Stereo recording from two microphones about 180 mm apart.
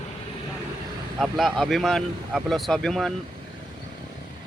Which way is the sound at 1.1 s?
Centre (ahead or behind).